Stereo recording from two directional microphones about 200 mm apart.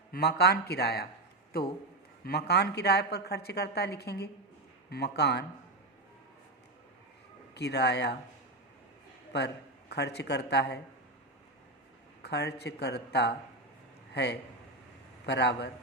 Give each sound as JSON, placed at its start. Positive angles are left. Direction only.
{"t": 0.1, "sound": "a woman's voice", "side_deg": 55}
{"t": 7.5, "sound": "a woman's voice", "side_deg": 55}
{"t": 9.3, "sound": "a woman's voice", "side_deg": 55}
{"t": 12.2, "sound": "a woman's voice", "side_deg": 55}